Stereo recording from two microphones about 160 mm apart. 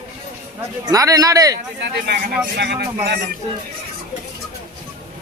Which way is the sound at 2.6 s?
90° right.